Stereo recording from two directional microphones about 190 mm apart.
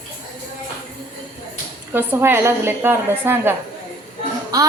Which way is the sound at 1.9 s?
10° right (ahead or behind).